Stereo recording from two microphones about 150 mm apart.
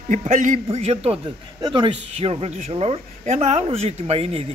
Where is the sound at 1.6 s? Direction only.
30° right (ahead or behind).